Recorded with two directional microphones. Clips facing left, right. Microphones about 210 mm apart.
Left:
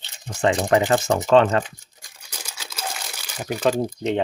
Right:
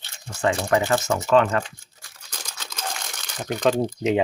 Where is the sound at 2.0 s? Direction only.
10° left (ahead or behind).